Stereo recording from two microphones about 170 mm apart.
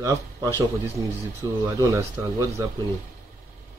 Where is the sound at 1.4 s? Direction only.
15° right (ahead or behind).